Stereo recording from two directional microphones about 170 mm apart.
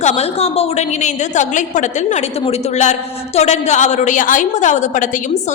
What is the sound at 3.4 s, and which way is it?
A woman's voice, 40° left (ahead or behind).